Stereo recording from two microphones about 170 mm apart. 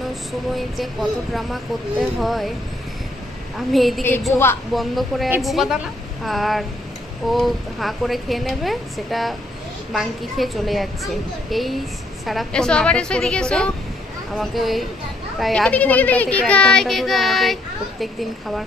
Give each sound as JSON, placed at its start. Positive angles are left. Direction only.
{"t": 1.3, "sound": "a child's voice", "side_deg": 0}
{"t": 3.5, "sound": "a child's voice", "side_deg": 0}